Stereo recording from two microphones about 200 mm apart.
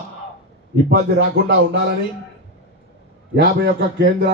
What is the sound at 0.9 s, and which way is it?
Speech, 55° right (ahead or behind).